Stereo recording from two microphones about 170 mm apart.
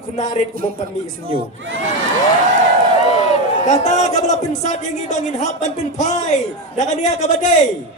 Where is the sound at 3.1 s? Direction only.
40° left (ahead or behind).